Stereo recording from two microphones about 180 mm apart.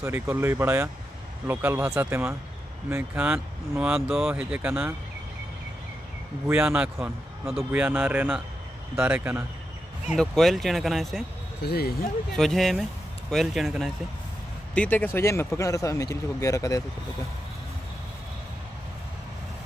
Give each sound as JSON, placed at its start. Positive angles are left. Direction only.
{"t": 0.0, "sound": "speech", "side_deg": -15}
{"t": 6.4, "sound": "speech", "side_deg": -10}
{"t": 10.0, "sound": "speech", "side_deg": 0}
{"t": 11.6, "sound": "speech", "side_deg": 60}
{"t": 12.4, "sound": "speech", "side_deg": 0}